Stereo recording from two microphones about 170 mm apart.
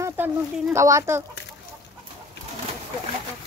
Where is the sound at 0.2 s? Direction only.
10° right (ahead or behind).